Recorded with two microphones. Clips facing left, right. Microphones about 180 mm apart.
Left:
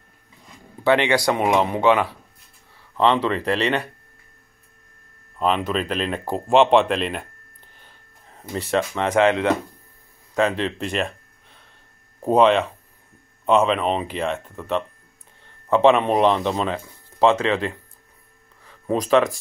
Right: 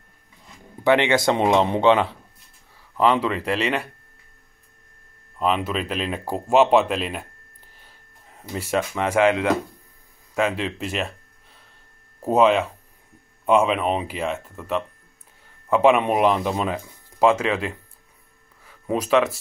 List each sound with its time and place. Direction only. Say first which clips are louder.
0.8 s speech: even; 20° right (ahead or behind)
3.0 s speech: left 1 dB; 5° right (ahead or behind)
5.4 s speech: left 1 dB; 5° right (ahead or behind)
8.5 s speech: left 1 dB; 10° right (ahead or behind)
10.5 s speech: left 2 dB; 5° right (ahead or behind)
12.2 s speech: left 1 dB; 5° right (ahead or behind)